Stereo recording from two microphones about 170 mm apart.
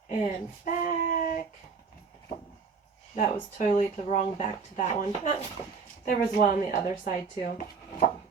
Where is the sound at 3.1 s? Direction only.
45° left (ahead or behind).